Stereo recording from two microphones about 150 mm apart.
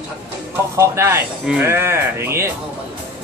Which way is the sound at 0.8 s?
15° right (ahead or behind).